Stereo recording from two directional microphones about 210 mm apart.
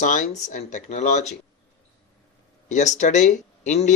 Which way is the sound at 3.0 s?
35° left (ahead or behind).